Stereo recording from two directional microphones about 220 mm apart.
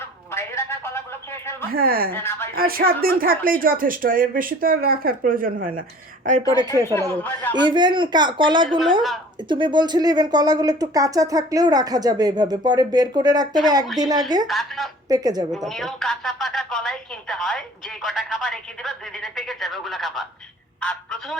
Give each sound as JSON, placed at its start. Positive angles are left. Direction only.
{"t": 0.0, "sound": "a sound", "side_deg": 10}
{"t": 1.7, "sound": "speech", "side_deg": -40}
{"t": 2.1, "sound": "a man's voice", "side_deg": 10}
{"t": 2.6, "sound": "speech", "side_deg": -40}
{"t": 7.1, "sound": "a man's voice", "side_deg": 10}
{"t": 7.5, "sound": "speech", "side_deg": -20}
{"t": 14.4, "sound": "a woman's voice", "side_deg": 0}
{"t": 15.1, "sound": "speech", "side_deg": -15}
{"t": 15.5, "sound": "a woman's voice", "side_deg": 0}